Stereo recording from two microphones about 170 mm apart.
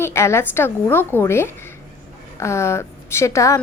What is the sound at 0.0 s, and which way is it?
A woman's voice, 15° left (ahead or behind).